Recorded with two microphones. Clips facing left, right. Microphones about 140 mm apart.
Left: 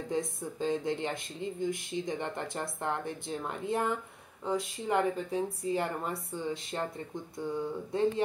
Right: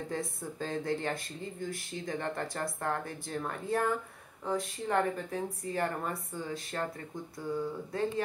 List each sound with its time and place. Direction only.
0.1 s speech: 20° left (ahead or behind)